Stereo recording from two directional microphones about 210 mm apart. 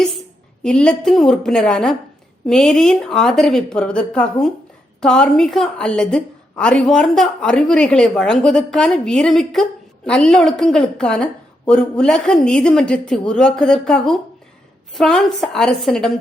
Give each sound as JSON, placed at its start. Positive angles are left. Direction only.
{"t": 0.6, "sound": "a woman's voice", "side_deg": 5}